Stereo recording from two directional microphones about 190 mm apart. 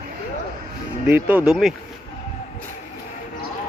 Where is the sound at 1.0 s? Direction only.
10° right (ahead or behind).